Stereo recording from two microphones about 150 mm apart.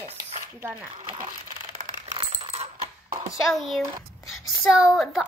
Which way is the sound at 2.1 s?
35° right (ahead or behind).